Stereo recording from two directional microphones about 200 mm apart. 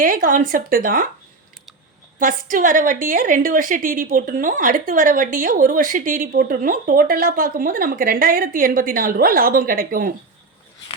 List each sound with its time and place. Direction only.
0.0 s a woman's voice: 45° right (ahead or behind)
2.1 s a woman's voice: 45° right (ahead or behind)